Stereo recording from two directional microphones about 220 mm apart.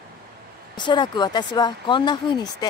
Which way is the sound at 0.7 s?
20° left (ahead or behind).